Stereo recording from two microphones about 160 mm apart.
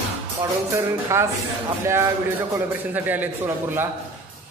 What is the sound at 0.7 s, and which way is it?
Speech, 15° right (ahead or behind).